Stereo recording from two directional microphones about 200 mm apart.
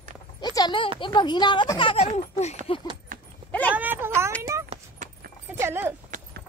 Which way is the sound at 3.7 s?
10° right (ahead or behind).